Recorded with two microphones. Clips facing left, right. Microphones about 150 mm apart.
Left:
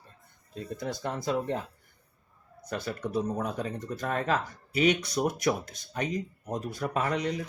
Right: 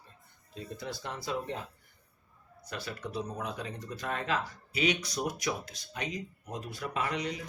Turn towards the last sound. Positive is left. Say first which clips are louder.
# left 5 dB
turn(degrees=45)  # may be behind; listen again after turning